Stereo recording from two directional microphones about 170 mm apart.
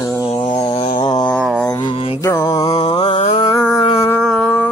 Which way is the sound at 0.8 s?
45° left (ahead or behind).